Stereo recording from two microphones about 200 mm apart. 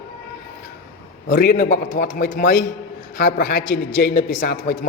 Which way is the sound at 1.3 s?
45° left (ahead or behind).